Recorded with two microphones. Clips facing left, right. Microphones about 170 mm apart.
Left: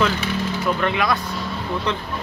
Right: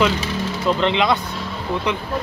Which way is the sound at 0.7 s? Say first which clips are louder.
Right 4 dB; 20° right (ahead or behind).